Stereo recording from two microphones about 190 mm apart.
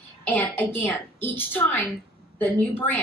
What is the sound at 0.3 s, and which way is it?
Speech, 10° left (ahead or behind).